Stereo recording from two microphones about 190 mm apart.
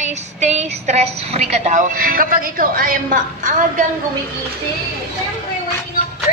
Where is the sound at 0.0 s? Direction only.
35° right (ahead or behind).